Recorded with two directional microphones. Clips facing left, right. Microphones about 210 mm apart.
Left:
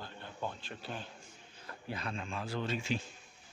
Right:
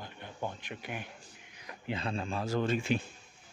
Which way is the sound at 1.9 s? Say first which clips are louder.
Right 5 dB; 30° right (ahead or behind).